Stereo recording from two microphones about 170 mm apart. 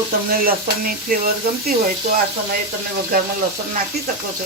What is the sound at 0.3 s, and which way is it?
Speech, 60° right (ahead or behind).